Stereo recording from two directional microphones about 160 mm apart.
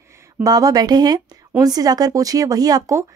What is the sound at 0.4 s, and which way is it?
Speech, 25° right (ahead or behind).